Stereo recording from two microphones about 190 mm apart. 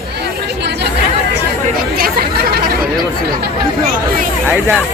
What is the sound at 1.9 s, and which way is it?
Chatter, 50° right (ahead or behind).